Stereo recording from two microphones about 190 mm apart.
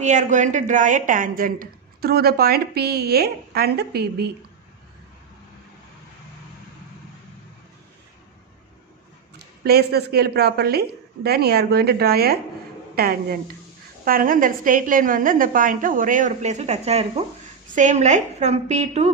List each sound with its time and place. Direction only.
0.0 s a woman's voice: 40° right (ahead or behind); by 4.3 s 55° right (ahead or behind)
9.6 s a woman's voice: 55° right (ahead or behind); by 19.1 s 35° right (ahead or behind)